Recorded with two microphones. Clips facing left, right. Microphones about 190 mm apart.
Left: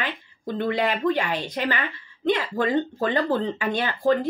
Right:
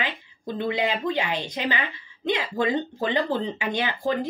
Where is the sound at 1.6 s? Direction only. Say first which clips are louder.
Left 1 dB; 15° right (ahead or behind).